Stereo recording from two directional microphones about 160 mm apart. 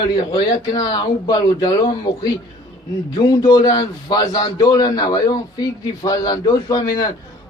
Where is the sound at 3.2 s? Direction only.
25° left (ahead or behind).